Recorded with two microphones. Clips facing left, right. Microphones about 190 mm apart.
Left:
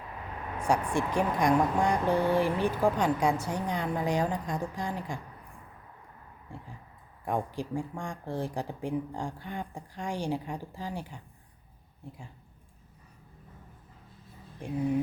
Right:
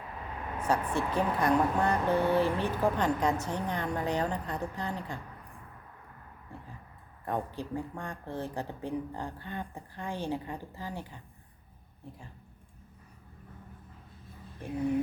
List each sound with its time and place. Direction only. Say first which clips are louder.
0.6 s a woman's voice: left 2 dB; 10° left (ahead or behind)
7.3 s a woman's voice: left 2 dB; 10° left (ahead or behind)